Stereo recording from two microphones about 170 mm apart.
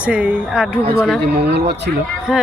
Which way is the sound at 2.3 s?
Centre (ahead or behind).